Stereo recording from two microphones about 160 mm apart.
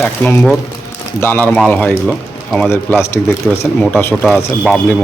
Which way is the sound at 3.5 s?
Centre (ahead or behind).